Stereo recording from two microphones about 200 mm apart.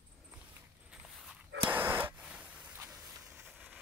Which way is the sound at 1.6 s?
10° right (ahead or behind).